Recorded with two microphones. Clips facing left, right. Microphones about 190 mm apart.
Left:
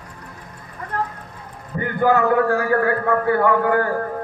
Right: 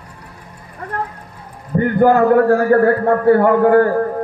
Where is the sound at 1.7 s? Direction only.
40° right (ahead or behind).